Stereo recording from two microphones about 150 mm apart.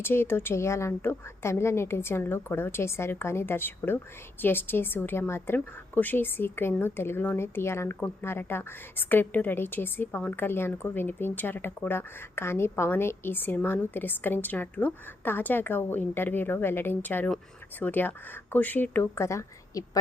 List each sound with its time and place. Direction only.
0.0 s a woman's voice: 15° left (ahead or behind)